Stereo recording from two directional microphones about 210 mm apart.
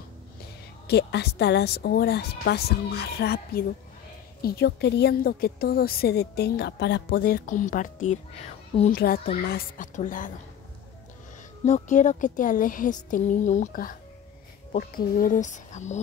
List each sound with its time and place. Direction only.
0.8 s a woman's voice: 50° left (ahead or behind)
11.6 s a woman's voice: 35° left (ahead or behind)